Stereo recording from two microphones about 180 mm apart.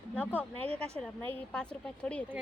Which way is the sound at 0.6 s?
35° right (ahead or behind).